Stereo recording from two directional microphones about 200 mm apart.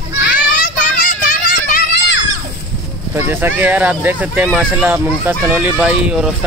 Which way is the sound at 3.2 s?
10° right (ahead or behind).